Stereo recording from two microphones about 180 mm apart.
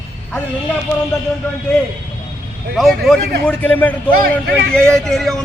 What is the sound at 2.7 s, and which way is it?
A man's voice, centre (ahead or behind).